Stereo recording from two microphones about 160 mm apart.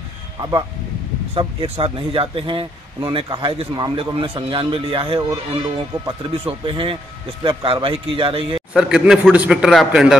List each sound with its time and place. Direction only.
0.4 s speech: 25° right (ahead or behind)
1.3 s speech: 35° right (ahead or behind)
8.7 s a man's voice: 5° right (ahead or behind)